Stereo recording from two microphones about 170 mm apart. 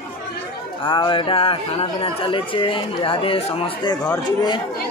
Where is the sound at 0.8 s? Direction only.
30° left (ahead or behind).